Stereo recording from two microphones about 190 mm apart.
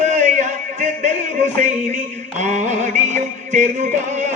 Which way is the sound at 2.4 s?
40° right (ahead or behind).